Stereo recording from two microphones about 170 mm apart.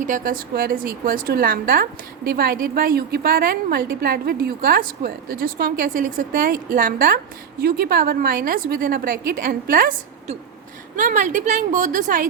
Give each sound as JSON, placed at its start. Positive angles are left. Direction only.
{"t": 0.0, "sound": "a woman's voice", "side_deg": -55}
{"t": 10.9, "sound": "a woman's voice", "side_deg": -50}